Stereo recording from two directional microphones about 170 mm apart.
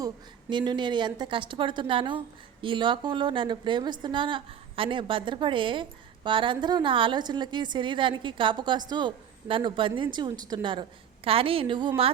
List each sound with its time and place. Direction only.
0.5 s a woman's voice: 25° right (ahead or behind)